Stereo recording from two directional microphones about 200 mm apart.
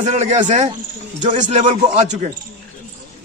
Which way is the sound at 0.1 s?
35° right (ahead or behind).